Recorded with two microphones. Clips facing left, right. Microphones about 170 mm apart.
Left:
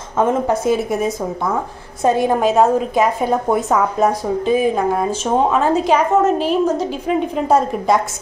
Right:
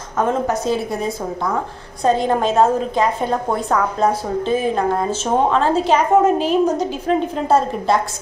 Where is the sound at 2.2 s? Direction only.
5° left (ahead or behind).